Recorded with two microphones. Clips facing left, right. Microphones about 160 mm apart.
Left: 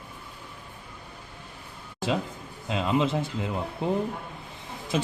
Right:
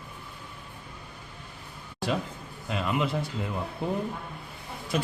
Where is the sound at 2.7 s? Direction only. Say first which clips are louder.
Left 3 dB; 25° left (ahead or behind).